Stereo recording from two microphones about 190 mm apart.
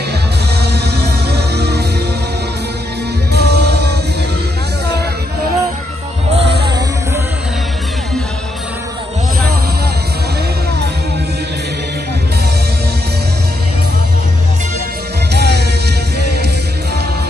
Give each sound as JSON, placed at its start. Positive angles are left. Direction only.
{"t": 0.6, "sound": "music", "side_deg": -60}
{"t": 3.3, "sound": "music", "side_deg": -60}
{"t": 15.3, "sound": "music", "side_deg": -60}